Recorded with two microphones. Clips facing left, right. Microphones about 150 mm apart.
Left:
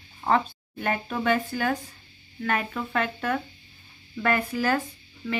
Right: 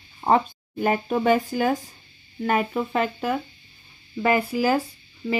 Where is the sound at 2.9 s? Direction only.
10° right (ahead or behind).